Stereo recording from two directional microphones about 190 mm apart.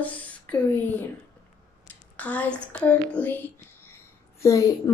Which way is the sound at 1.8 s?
10° left (ahead or behind).